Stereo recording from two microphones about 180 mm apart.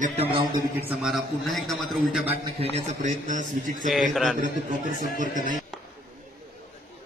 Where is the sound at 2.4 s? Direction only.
35° right (ahead or behind).